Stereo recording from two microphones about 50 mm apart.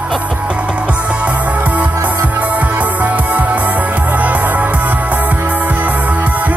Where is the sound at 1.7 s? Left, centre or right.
Right.